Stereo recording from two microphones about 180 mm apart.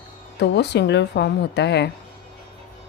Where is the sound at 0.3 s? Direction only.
70° left (ahead or behind).